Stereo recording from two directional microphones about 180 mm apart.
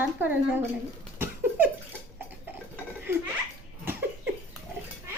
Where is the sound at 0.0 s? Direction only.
10° right (ahead or behind).